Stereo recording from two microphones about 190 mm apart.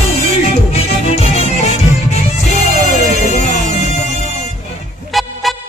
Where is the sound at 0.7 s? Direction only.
35° left (ahead or behind).